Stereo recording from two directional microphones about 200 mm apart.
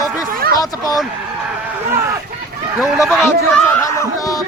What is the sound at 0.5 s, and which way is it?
Speech, 15° left (ahead or behind).